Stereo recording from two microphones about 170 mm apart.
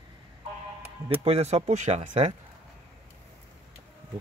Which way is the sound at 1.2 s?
40° right (ahead or behind).